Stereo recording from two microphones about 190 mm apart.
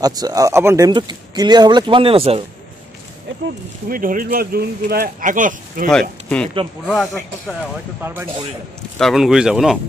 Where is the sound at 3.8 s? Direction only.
45° right (ahead or behind).